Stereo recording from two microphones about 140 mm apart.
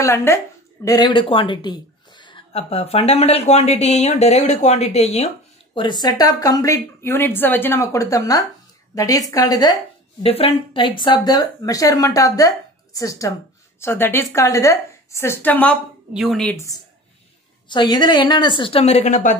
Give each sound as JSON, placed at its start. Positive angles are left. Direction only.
{"t": 0.0, "sound": "speech", "side_deg": 20}
{"t": 0.8, "sound": "a woman's voice", "side_deg": 30}
{"t": 5.8, "sound": "a woman's voice", "side_deg": 30}
{"t": 10.2, "sound": "speech", "side_deg": 45}
{"t": 16.1, "sound": "a woman's voice", "side_deg": 0}
{"t": 17.6, "sound": "a woman's voice", "side_deg": 30}